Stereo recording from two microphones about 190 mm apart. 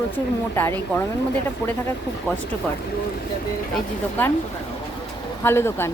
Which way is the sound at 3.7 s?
10° left (ahead or behind).